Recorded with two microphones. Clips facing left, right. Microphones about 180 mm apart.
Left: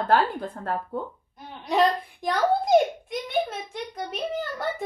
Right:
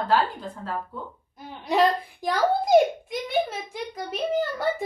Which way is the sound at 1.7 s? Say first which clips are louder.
Right 1 dB; centre (ahead or behind).